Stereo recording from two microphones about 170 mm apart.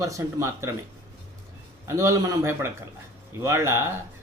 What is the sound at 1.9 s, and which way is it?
Speech, 15° right (ahead or behind).